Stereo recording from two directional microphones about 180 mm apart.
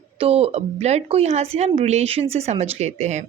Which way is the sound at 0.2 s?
35° right (ahead or behind).